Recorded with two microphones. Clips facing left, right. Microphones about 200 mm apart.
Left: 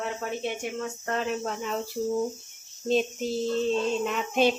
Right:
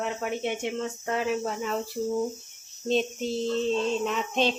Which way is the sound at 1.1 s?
5° right (ahead or behind).